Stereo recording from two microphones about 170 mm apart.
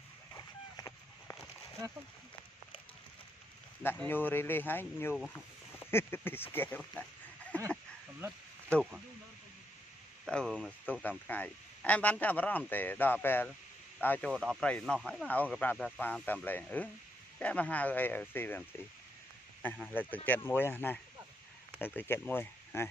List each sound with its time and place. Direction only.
0.3 s a sound: 15° left (ahead or behind)
3.8 s a man's voice: 10° left (ahead or behind)
6.8 s speech: centre (ahead or behind)
7.6 s a sound: 15° right (ahead or behind)
10.2 s a man's voice: 5° left (ahead or behind)
19.9 s a man's voice: 10° left (ahead or behind)